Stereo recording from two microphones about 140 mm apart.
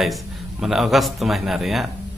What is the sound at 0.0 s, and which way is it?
A man's voice, centre (ahead or behind).